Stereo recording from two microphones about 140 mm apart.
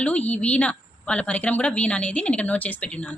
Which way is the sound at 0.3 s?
10° left (ahead or behind).